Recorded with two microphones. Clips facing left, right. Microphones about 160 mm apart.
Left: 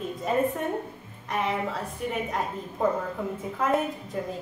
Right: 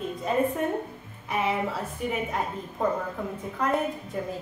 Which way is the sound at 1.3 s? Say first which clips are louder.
Right 1 dB; 5° right (ahead or behind).